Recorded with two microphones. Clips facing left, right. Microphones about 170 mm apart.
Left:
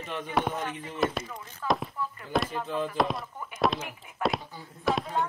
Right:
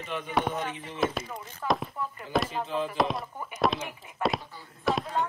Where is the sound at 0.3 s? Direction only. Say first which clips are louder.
Even; centre (ahead or behind).